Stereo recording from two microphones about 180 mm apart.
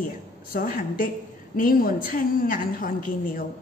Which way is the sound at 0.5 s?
50° left (ahead or behind).